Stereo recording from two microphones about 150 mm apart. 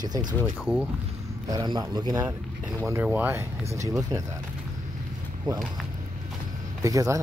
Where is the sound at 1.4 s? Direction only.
30° right (ahead or behind).